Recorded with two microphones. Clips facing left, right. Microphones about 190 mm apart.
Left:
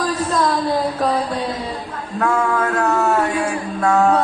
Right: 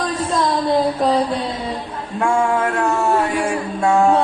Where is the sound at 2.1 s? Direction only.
25° right (ahead or behind).